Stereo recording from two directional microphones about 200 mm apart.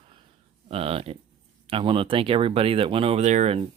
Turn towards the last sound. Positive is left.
turn(degrees=-35)  # may be behind; listen again after turning